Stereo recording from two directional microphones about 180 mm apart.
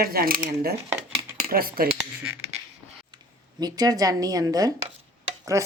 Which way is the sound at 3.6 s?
20° right (ahead or behind).